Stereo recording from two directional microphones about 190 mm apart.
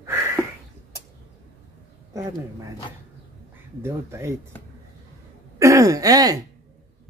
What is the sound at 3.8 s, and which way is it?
Speech, 15° right (ahead or behind).